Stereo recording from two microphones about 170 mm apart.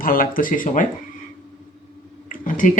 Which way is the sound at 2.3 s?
50° left (ahead or behind).